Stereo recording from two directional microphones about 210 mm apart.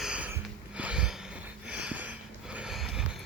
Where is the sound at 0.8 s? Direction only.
5° right (ahead or behind).